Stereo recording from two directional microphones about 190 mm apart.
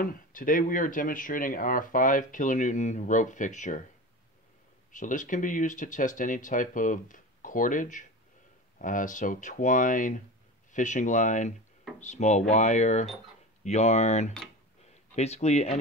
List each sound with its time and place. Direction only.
0.0 s speech: 45° left (ahead or behind)
4.9 s speech: 40° left (ahead or behind)